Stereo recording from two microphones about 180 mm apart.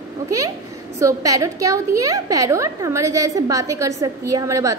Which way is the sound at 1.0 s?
20° right (ahead or behind).